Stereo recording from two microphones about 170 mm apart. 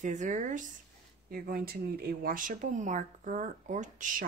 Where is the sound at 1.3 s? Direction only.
60° right (ahead or behind).